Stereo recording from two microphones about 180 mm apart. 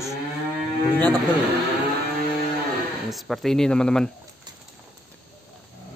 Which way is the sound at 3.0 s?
Centre (ahead or behind).